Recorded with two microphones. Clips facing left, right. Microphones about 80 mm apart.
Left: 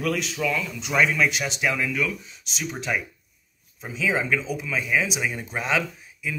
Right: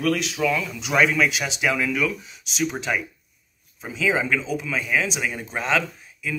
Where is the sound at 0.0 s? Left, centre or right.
Centre.